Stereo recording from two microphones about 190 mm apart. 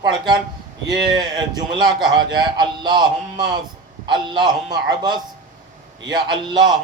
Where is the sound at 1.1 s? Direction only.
20° right (ahead or behind).